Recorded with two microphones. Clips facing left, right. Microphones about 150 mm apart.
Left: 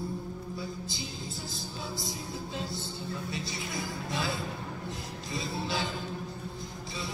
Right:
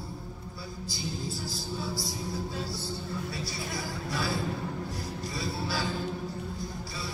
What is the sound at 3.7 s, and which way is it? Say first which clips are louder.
Music: even; 20° left (ahead or behind).